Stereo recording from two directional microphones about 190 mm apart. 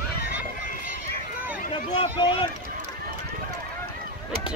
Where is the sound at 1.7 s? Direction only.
25° left (ahead or behind).